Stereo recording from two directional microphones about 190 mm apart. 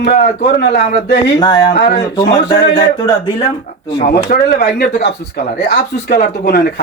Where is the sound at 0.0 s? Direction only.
55° left (ahead or behind).